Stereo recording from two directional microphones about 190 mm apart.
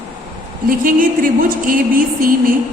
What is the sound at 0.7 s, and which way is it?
A woman's voice, 45° right (ahead or behind).